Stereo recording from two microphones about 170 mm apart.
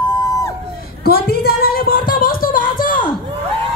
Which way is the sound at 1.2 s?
60° left (ahead or behind).